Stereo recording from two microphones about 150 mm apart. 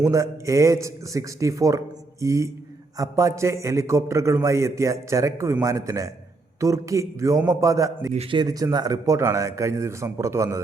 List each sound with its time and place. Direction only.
0.0 s a man's voice: 20° right (ahead or behind)
8.1 s speech: 45° right (ahead or behind)
8.4 s a man's voice: 25° right (ahead or behind)